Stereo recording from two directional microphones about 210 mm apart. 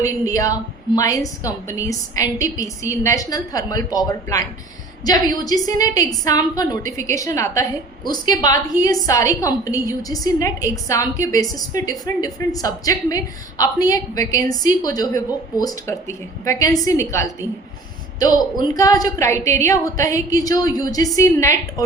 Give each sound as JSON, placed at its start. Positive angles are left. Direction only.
{"t": 0.0, "sound": "a woman's voice", "side_deg": 15}